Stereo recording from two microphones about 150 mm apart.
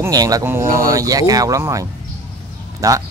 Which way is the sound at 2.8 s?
25° right (ahead or behind).